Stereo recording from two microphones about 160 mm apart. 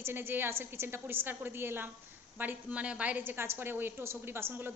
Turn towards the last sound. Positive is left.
turn(degrees=-15)  # may be behind; listen again after turning